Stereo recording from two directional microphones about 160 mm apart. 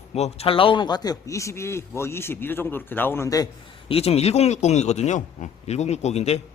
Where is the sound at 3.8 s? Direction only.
40° left (ahead or behind).